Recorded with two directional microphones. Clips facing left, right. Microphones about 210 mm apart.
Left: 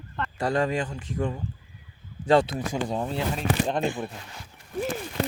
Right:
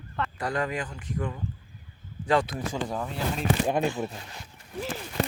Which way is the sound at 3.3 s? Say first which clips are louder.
Right 3 dB; 10° right (ahead or behind).